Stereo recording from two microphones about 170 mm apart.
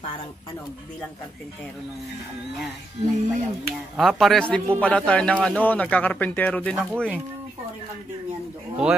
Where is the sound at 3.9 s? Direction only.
Centre (ahead or behind).